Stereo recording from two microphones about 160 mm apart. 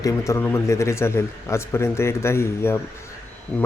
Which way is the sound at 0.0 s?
20° left (ahead or behind).